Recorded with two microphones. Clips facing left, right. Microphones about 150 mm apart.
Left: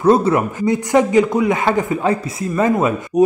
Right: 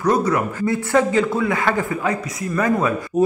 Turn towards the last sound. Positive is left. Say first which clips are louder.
# left 3 dB
turn(degrees=20)  # may be behind; listen again after turning